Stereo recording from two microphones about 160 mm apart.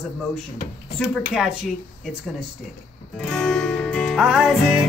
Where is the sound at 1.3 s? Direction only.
Centre (ahead or behind).